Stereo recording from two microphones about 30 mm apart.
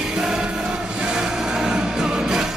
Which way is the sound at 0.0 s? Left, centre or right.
Centre.